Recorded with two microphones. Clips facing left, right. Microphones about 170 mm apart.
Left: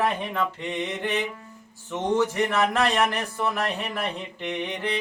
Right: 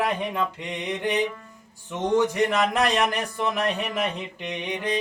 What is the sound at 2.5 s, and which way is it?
Speech, 15° right (ahead or behind).